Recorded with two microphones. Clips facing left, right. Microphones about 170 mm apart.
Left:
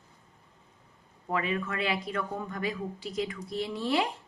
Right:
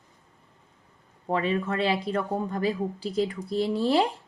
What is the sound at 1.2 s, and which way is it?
Speech, 30° right (ahead or behind).